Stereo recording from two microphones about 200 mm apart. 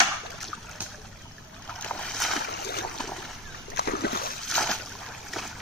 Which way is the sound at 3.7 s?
55° left (ahead or behind).